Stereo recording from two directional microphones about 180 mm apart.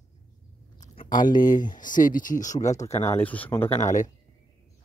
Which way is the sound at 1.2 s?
25° left (ahead or behind).